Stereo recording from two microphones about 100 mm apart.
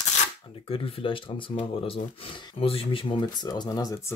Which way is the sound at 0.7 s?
65° left (ahead or behind).